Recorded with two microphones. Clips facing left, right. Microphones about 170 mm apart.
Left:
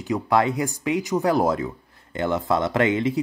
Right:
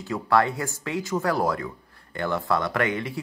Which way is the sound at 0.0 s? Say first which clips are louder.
Left 2 dB; 20° left (ahead or behind).